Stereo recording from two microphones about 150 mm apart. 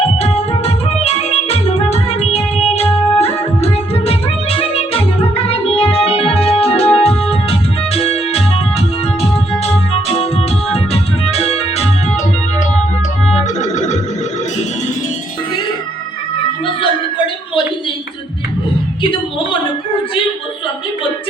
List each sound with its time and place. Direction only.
0.2 s music: 40° left (ahead or behind)
9.6 s music: 40° left (ahead or behind)